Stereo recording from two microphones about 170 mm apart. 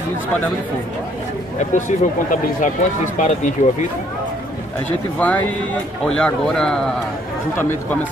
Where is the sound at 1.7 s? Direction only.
50° left (ahead or behind).